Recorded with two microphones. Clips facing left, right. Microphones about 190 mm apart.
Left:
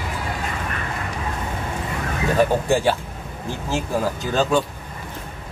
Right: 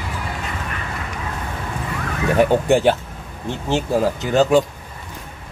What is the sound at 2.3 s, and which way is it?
Speech, 20° right (ahead or behind).